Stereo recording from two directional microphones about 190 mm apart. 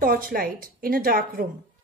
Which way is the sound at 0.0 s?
50° right (ahead or behind).